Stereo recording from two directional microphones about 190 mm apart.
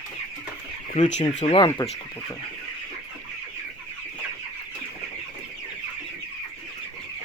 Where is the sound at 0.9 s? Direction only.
40° left (ahead or behind).